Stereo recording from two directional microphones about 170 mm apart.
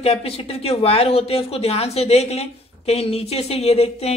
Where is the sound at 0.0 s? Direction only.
35° left (ahead or behind).